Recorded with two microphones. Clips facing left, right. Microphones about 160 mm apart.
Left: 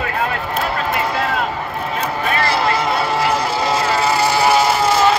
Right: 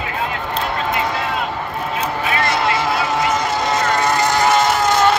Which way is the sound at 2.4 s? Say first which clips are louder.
Left 1 dB; centre (ahead or behind).